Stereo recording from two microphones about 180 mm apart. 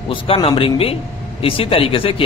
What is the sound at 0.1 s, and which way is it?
A man's voice, 30° left (ahead or behind).